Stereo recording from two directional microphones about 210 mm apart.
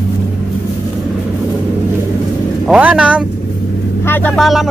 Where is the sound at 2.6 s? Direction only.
5° right (ahead or behind).